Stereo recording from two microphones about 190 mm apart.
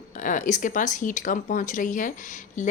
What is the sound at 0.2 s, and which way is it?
Speech, 40° left (ahead or behind).